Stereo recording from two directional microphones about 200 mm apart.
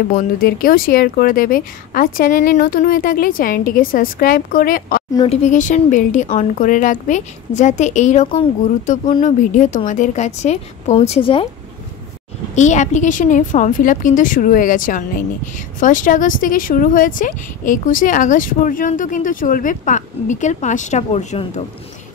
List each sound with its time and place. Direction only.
0.1 s speech: 45° left (ahead or behind)
5.1 s speech: 25° left (ahead or behind)
5.4 s speech: 40° left (ahead or behind)
12.5 s speech: 35° left (ahead or behind)